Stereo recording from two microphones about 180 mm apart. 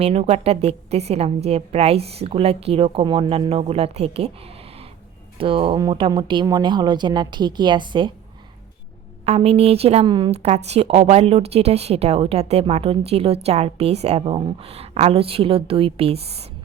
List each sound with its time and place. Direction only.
0.0 s a woman's voice: 35° right (ahead or behind)
5.4 s speech: 30° right (ahead or behind)
9.2 s a woman's voice: 35° right (ahead or behind)